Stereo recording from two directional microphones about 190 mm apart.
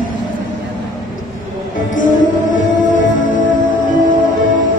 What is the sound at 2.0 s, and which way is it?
Music, 45° left (ahead or behind).